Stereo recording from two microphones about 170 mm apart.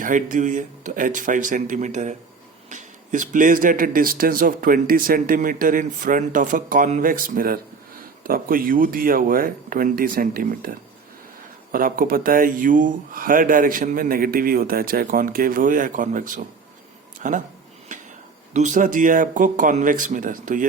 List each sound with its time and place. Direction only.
0.0 s speech: 50° right (ahead or behind)
18.5 s speech: 45° right (ahead or behind)